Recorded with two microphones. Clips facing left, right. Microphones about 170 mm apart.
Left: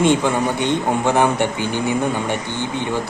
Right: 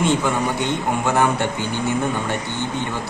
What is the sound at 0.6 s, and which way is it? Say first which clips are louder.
Speech: left 3 dB; 20° left (ahead or behind).